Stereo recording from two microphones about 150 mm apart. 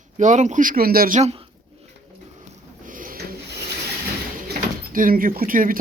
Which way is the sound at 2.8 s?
65° right (ahead or behind).